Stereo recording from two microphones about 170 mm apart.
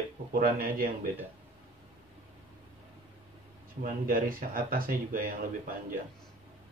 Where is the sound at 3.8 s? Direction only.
55° right (ahead or behind).